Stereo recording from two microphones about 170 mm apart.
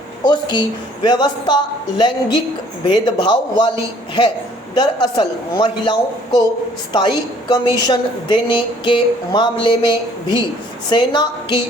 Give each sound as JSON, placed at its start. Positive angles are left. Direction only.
{"t": 0.3, "sound": "a woman's voice", "side_deg": 25}
{"t": 4.7, "sound": "a woman's voice", "side_deg": 25}